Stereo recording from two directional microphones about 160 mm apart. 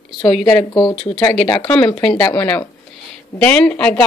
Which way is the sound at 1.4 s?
30° left (ahead or behind).